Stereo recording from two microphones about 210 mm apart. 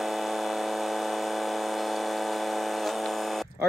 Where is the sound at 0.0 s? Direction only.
Centre (ahead or behind).